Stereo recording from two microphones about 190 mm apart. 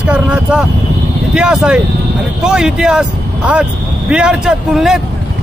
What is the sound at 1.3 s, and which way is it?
A man's voice, 5° right (ahead or behind).